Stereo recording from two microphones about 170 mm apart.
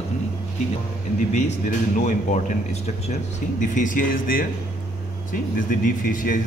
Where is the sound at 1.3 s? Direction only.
45° left (ahead or behind).